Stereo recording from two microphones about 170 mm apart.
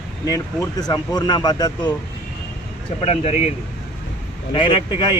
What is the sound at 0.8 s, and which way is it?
Speech, 25° left (ahead or behind).